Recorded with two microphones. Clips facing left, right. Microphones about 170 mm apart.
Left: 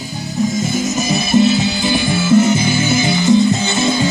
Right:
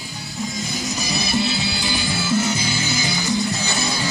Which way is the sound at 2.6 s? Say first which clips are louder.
Left 9 dB; 50° left (ahead or behind).